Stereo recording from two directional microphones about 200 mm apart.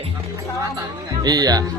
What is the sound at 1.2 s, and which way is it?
Speech, 20° right (ahead or behind).